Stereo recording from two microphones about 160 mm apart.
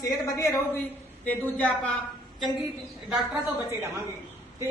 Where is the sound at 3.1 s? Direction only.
10° right (ahead or behind).